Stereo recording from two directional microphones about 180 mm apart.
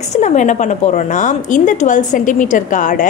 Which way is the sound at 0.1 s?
40° left (ahead or behind).